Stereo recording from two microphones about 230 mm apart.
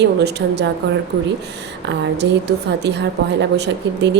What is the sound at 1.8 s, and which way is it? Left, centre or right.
Speech, right.